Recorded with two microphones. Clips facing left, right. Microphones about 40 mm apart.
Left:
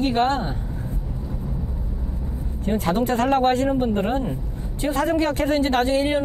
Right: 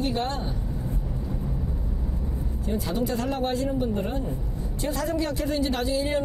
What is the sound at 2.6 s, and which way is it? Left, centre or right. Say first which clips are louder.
Speech: left 6 dB; left.